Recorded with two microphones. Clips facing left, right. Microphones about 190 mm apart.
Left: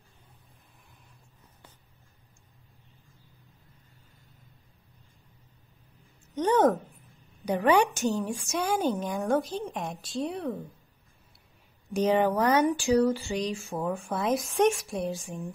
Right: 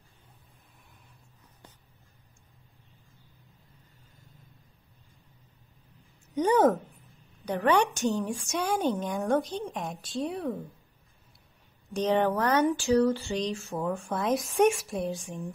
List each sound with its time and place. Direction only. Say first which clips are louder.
6.3 s speech: even; 10° right (ahead or behind)
7.4 s a woman's voice: left 2 dB; 10° left (ahead or behind)
11.9 s speech: left 1 dB; 10° left (ahead or behind)